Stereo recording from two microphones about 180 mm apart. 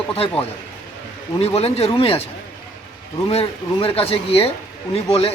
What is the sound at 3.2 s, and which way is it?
Speech, 30° left (ahead or behind).